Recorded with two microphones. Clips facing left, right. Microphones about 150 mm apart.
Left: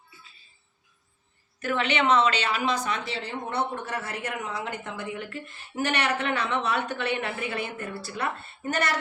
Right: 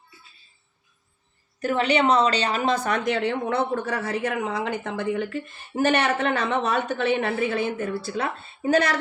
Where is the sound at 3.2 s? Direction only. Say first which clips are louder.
Right 6 dB; 90° right.